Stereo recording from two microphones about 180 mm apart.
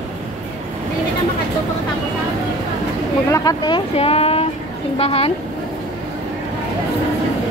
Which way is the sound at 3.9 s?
35° left (ahead or behind).